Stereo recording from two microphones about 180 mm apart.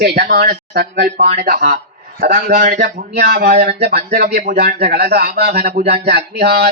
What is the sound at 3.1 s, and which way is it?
Speech, 60° right (ahead or behind).